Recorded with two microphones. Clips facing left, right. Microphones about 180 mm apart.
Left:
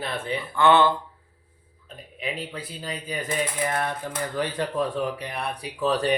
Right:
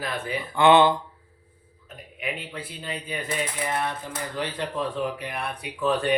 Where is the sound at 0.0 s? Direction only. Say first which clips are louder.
Left 1 dB; 30° left (ahead or behind).